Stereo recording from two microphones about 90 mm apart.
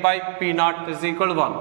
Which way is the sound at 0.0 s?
10° right (ahead or behind).